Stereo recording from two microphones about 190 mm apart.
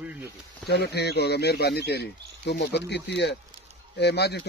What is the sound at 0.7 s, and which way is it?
Speech, 60° left (ahead or behind).